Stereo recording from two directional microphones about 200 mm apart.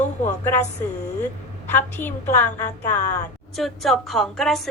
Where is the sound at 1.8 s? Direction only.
10° left (ahead or behind).